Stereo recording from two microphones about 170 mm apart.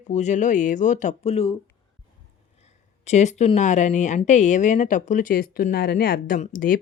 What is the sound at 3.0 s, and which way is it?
Speech, 40° left (ahead or behind).